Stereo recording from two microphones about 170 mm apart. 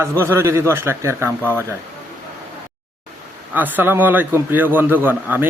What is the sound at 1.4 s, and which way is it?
Speech, 10° left (ahead or behind).